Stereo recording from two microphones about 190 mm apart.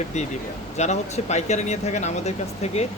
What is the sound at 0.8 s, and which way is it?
Speech, 35° left (ahead or behind).